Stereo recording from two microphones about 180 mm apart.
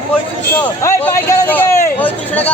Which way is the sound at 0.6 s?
15° left (ahead or behind).